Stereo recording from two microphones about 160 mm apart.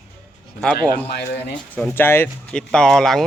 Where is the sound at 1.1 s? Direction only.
90° left.